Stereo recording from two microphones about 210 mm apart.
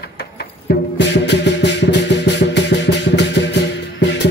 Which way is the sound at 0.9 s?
55° left (ahead or behind).